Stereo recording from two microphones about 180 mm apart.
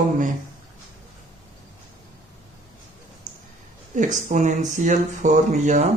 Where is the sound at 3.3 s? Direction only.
45° right (ahead or behind).